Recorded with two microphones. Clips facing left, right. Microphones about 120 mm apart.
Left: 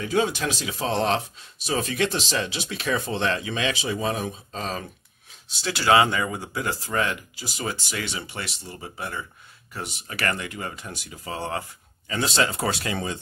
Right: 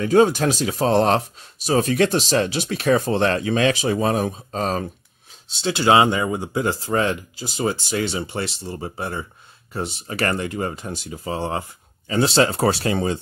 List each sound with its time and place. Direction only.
0.0 s speech: 45° right (ahead or behind)
5.5 s speech: 25° right (ahead or behind)